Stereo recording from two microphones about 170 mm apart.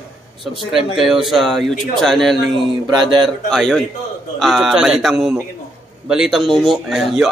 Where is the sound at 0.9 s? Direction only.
Centre (ahead or behind).